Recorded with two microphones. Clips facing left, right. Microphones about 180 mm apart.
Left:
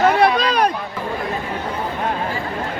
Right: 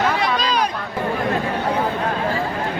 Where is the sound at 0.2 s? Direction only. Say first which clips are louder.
Left 5 dB; 60° left (ahead or behind).